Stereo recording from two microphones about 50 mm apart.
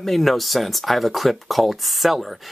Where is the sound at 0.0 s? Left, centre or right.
Centre.